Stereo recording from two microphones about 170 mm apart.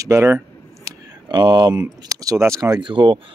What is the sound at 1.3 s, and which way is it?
Speech, 25° right (ahead or behind).